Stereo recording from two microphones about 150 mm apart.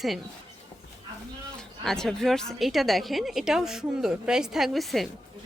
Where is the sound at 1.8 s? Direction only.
5° left (ahead or behind).